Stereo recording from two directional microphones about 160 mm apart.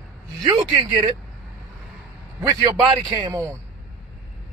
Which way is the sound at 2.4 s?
25° right (ahead or behind).